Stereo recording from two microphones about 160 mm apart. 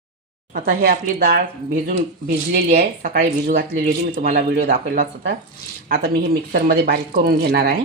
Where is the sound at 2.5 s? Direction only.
80° right.